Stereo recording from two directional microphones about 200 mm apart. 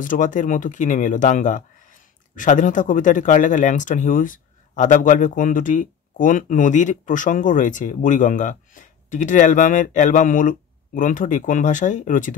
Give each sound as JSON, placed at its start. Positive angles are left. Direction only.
{"t": 0.0, "sound": "speech", "side_deg": 40}